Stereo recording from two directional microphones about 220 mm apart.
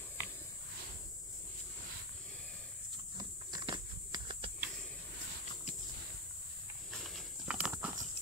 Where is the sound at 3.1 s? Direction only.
20° right (ahead or behind).